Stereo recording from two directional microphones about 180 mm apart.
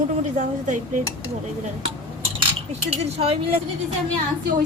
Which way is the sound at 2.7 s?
35° right (ahead or behind).